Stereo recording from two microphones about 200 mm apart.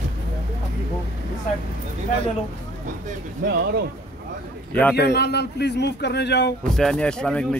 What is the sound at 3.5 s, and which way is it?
Speech, 55° right (ahead or behind).